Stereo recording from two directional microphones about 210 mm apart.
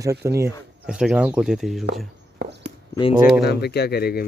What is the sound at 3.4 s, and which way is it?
Speech, 50° left (ahead or behind).